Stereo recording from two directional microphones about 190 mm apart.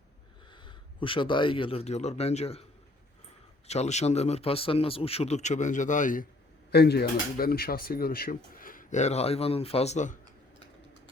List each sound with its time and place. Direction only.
0.5 s speech: 25° left (ahead or behind)
3.7 s speech: 35° left (ahead or behind)
6.7 s speech: 60° left (ahead or behind); by 10.2 s 40° left (ahead or behind)